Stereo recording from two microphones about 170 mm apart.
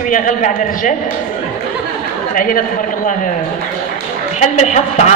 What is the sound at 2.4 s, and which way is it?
Speech, 55° left (ahead or behind).